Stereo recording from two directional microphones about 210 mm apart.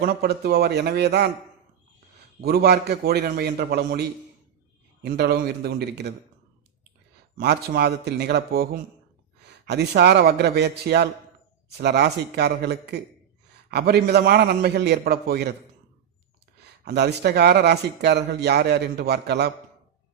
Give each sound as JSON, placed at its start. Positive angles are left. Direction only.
{"t": 0.0, "sound": "speech", "side_deg": -50}
{"t": 2.4, "sound": "speech", "side_deg": -50}
{"t": 5.0, "sound": "speech", "side_deg": -50}
{"t": 7.3, "sound": "speech", "side_deg": -45}
{"t": 16.8, "sound": "speech", "side_deg": -50}